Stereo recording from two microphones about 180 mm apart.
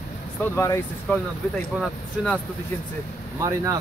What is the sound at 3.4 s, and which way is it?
Speech, 20° right (ahead or behind).